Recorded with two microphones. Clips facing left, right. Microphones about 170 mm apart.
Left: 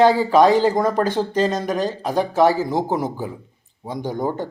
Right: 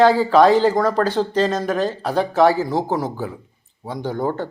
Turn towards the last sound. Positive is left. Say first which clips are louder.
# right 1 dB
turn(degrees=15)  # may be behind; listen again after turning